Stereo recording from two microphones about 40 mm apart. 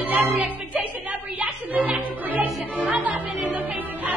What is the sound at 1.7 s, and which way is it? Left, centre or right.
Music, right.